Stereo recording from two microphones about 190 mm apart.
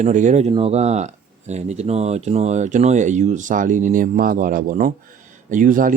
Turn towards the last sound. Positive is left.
turn(degrees=-45)  # may be behind; listen again after turning